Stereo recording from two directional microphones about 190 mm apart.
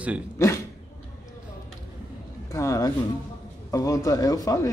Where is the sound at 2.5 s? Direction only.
15° left (ahead or behind).